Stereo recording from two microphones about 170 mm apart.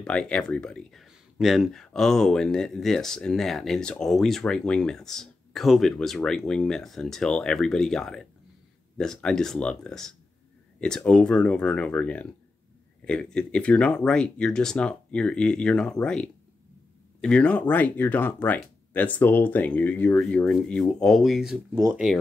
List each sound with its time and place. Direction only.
0.0 s speech: 5° left (ahead or behind)